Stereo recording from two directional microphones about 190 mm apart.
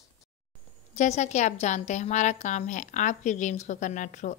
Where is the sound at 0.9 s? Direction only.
40° left (ahead or behind).